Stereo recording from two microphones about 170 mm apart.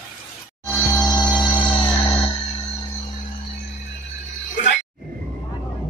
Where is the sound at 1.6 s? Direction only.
10° left (ahead or behind).